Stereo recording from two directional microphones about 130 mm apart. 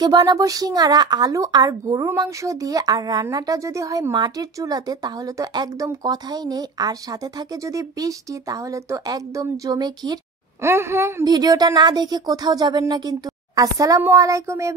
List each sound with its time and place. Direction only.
0.0 s a woman's voice: 30° right (ahead or behind)
10.6 s a woman's voice: 20° right (ahead or behind)
11.3 s speech: 30° right (ahead or behind)